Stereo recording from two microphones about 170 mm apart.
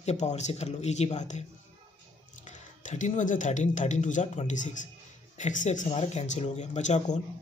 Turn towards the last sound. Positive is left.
turn(degrees=40)  # may be behind; listen again after turning